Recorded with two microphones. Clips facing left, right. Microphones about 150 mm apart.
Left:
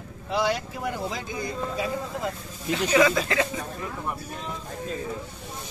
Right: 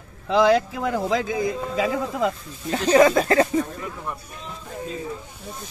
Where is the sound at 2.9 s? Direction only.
45° right (ahead or behind).